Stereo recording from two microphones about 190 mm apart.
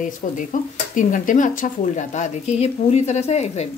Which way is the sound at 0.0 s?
45° left (ahead or behind).